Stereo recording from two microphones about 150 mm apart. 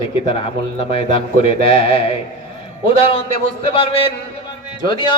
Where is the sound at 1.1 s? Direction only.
40° left (ahead or behind).